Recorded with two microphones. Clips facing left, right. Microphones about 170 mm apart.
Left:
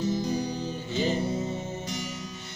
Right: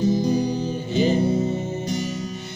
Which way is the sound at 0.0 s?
35° right (ahead or behind).